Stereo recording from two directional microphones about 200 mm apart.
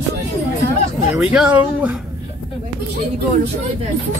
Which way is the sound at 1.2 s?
5° right (ahead or behind).